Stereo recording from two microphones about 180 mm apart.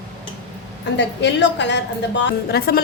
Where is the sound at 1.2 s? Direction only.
75° left (ahead or behind); by 2.8 s 60° left (ahead or behind).